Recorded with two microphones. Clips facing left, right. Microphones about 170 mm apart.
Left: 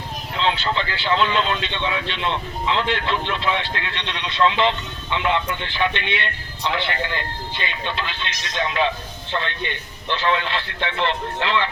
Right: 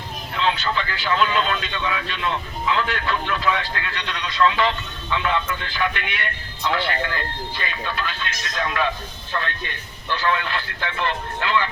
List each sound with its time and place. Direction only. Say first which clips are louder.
0.3 s speech: left 1 dB; 30° left (ahead or behind)